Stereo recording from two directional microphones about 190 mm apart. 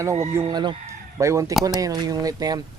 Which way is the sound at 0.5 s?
25° right (ahead or behind).